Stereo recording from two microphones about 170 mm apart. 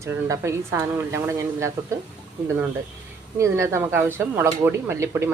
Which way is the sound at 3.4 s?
15° right (ahead or behind).